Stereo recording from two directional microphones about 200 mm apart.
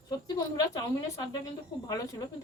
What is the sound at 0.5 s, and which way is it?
Speech, 20° left (ahead or behind).